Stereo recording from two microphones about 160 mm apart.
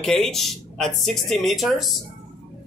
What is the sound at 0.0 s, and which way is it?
Speech, centre (ahead or behind).